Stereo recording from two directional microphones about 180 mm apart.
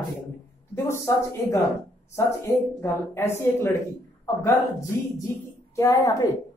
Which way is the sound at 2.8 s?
15° left (ahead or behind).